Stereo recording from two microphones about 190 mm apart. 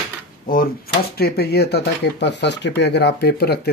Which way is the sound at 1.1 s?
55° left (ahead or behind).